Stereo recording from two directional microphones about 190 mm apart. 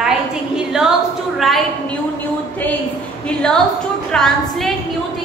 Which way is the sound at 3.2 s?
5° left (ahead or behind).